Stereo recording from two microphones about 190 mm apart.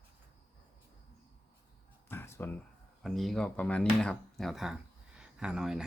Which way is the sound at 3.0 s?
Centre (ahead or behind).